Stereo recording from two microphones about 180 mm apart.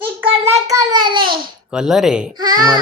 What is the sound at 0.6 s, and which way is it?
Child singing, 20° right (ahead or behind).